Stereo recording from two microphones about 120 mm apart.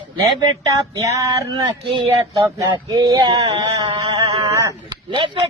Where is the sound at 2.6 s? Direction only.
35° right (ahead or behind).